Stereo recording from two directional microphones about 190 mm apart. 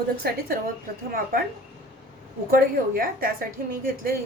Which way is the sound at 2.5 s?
50° right (ahead or behind).